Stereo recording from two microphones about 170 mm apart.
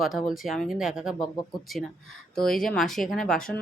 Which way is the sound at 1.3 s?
20° left (ahead or behind).